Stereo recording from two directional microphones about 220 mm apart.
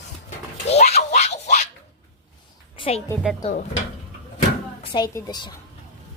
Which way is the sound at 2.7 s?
25° left (ahead or behind).